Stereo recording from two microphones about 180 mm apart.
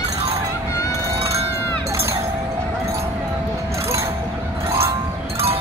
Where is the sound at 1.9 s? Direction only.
15° right (ahead or behind).